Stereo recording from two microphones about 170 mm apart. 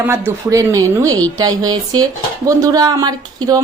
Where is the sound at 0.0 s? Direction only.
15° right (ahead or behind).